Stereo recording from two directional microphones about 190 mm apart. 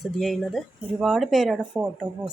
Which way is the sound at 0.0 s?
Centre (ahead or behind).